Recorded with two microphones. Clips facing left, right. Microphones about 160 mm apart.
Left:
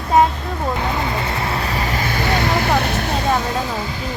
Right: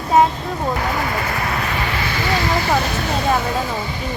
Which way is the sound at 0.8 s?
25° left (ahead or behind).